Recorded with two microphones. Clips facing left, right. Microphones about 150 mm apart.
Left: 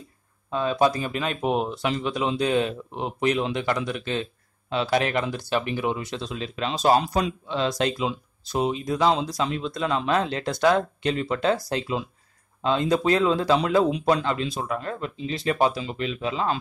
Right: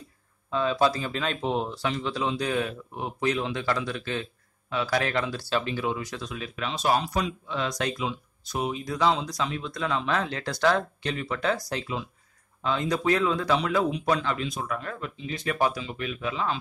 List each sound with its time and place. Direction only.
0.5 s speech: 15° left (ahead or behind)